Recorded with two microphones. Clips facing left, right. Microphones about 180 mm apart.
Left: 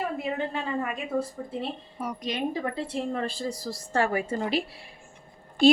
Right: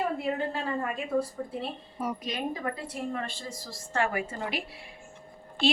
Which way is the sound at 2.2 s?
30° left (ahead or behind).